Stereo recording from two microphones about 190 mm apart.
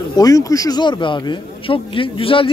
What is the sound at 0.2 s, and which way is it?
A man's voice, 15° left (ahead or behind).